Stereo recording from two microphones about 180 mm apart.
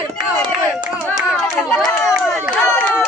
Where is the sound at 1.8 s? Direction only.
Centre (ahead or behind).